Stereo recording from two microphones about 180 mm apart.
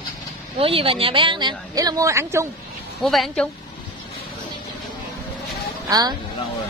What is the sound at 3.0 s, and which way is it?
Speech, 5° left (ahead or behind).